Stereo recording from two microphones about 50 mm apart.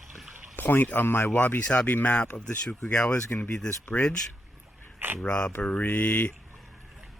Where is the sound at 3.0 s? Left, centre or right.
Left.